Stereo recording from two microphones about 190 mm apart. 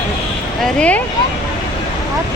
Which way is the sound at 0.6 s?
5° left (ahead or behind).